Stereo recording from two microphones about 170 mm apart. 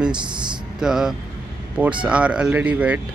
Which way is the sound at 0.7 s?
5° right (ahead or behind).